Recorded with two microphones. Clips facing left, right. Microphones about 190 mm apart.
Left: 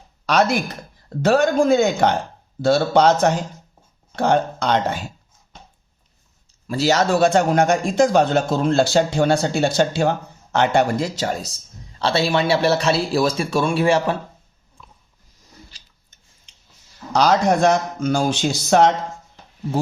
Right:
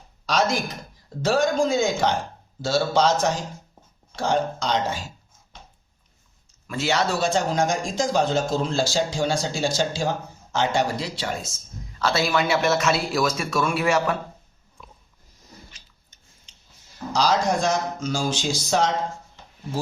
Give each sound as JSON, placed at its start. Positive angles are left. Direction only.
{"t": 0.3, "sound": "a man's voice", "side_deg": 60}
{"t": 6.7, "sound": "a man's voice", "side_deg": 40}
{"t": 17.1, "sound": "a man's voice", "side_deg": 60}